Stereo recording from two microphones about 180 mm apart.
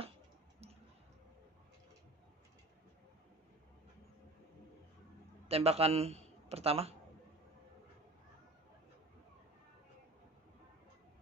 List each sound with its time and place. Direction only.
5.5 s a man's voice: 35° right (ahead or behind)